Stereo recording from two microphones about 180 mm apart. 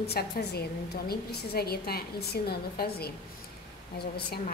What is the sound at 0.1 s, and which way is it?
A woman's voice, 60° left (ahead or behind).